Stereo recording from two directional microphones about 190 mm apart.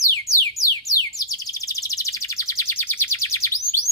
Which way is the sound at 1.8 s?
15° left (ahead or behind).